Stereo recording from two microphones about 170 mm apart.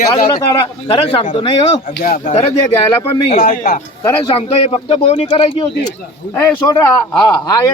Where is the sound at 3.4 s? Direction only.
55° left (ahead or behind).